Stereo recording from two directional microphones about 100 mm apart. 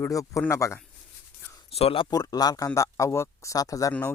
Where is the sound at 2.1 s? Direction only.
40° left (ahead or behind).